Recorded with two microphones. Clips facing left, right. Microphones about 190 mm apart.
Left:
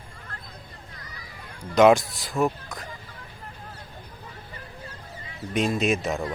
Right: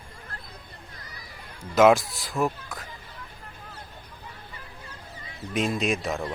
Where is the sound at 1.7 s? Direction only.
Centre (ahead or behind).